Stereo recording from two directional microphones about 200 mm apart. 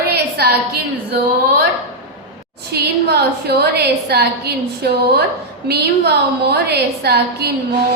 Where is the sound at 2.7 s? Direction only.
55° right (ahead or behind).